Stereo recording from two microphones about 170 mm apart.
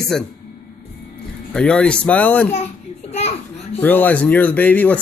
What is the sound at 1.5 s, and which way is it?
Speech, 5° left (ahead or behind).